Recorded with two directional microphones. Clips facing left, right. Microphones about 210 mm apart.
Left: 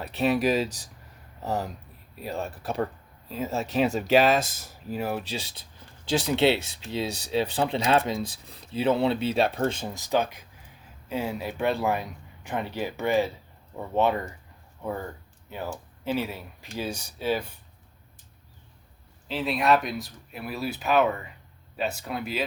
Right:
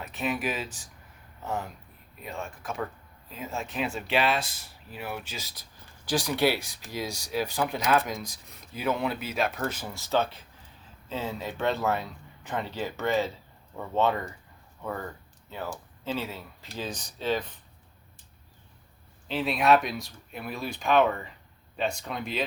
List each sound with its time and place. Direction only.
0.0 s speech: 35° left (ahead or behind); by 17.6 s 10° left (ahead or behind)
19.3 s speech: centre (ahead or behind)